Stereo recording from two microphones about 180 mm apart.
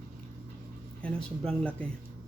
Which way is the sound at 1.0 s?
5° left (ahead or behind).